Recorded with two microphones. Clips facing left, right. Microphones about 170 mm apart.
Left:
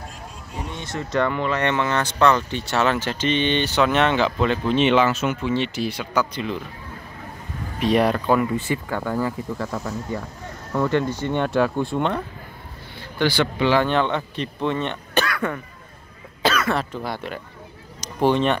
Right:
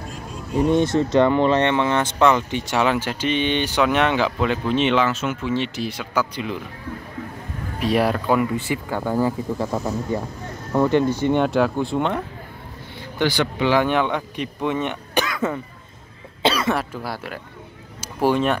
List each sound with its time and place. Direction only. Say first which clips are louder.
0.7 s speech: right 5 dB; 30° right (ahead or behind); by 6.6 s 10° right (ahead or behind)
7.8 s speech: left 1 dB; 5° right (ahead or behind); by 11.3 s 25° right (ahead or behind)
11.3 s speech: left 2 dB; 10° right (ahead or behind)
16.4 s cough: right 1 dB; 25° right (ahead or behind)
16.7 s speech: even; 5° right (ahead or behind)